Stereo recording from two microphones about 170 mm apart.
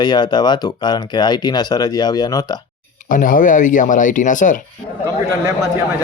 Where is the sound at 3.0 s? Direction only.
55° left (ahead or behind).